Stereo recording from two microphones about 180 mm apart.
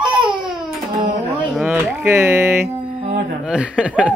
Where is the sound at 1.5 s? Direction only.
5° right (ahead or behind).